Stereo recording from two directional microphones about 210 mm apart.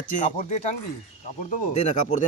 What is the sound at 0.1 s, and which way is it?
Speech, 35° left (ahead or behind).